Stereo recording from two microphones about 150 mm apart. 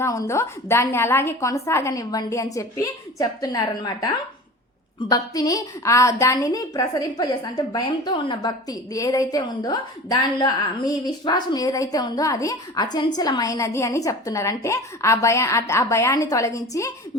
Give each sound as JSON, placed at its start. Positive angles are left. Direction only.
{"t": 0.0, "sound": "a woman's voice", "side_deg": 20}